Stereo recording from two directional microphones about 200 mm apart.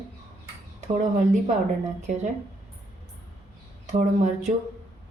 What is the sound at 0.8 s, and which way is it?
Speech, 35° right (ahead or behind).